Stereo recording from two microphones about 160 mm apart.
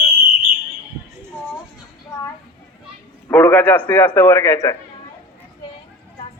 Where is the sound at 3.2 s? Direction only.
10° left (ahead or behind).